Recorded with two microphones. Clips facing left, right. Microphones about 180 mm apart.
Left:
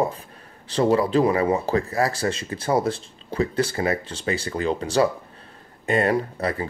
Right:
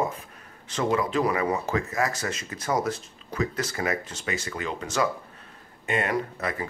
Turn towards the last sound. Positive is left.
turn(degrees=30)  # may be behind; listen again after turning